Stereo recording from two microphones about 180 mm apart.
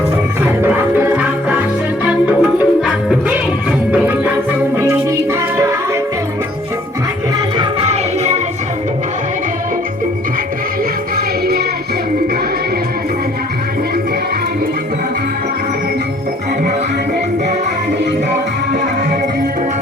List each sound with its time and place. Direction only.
0.4 s music: 10° right (ahead or behind)
7.6 s music: 35° right (ahead or behind)